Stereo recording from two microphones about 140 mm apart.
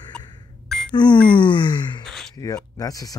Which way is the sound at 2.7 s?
25° left (ahead or behind).